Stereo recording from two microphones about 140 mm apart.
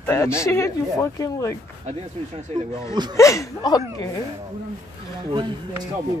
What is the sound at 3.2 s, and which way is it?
Speech, 20° left (ahead or behind).